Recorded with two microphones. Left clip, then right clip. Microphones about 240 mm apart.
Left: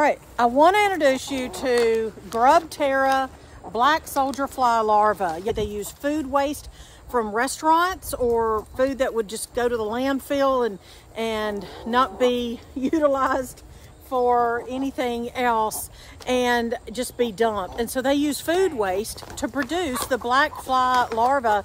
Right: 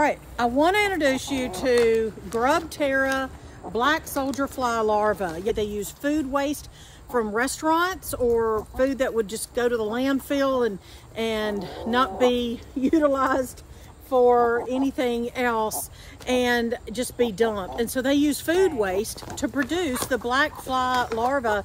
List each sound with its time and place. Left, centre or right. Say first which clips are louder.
0.0 s a woman's voice: left 3 dB; left; by 21.5 s centre